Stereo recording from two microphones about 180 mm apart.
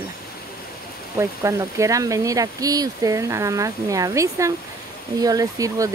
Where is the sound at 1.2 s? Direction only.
15° right (ahead or behind).